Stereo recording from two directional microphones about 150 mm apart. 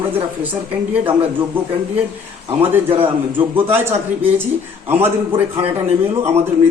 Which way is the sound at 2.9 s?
10° right (ahead or behind).